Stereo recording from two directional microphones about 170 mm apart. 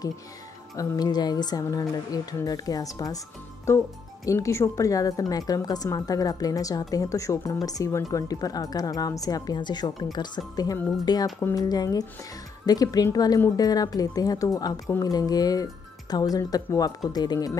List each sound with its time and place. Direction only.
0.7 s speech: 25° left (ahead or behind)